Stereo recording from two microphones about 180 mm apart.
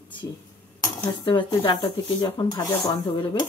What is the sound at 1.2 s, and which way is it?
Speech, 25° left (ahead or behind).